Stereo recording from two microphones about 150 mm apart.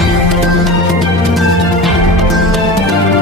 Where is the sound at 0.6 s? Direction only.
Centre (ahead or behind).